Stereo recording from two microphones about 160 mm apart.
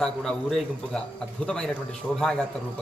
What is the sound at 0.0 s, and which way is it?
A man's voice, 5° left (ahead or behind).